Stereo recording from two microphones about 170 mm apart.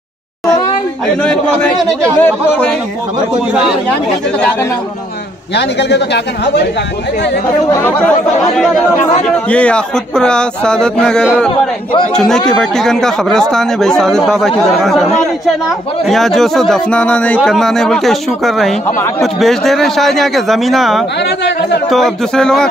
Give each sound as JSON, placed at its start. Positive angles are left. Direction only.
{"t": 1.0, "sound": "speech", "side_deg": 5}
{"t": 5.5, "sound": "speech", "side_deg": 80}
{"t": 7.7, "sound": "speech", "side_deg": 15}
{"t": 9.5, "sound": "speech", "side_deg": 5}
{"t": 16.1, "sound": "speech", "side_deg": 0}